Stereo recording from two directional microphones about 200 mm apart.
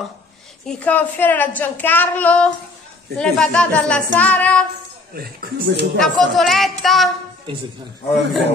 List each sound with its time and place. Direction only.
0.7 s a woman's voice: 5° left (ahead or behind)
5.1 s speech: 55° right (ahead or behind)
5.9 s a woman's voice: centre (ahead or behind)